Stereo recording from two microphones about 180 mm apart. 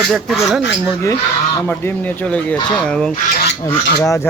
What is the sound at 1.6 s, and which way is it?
Speech, 10° left (ahead or behind).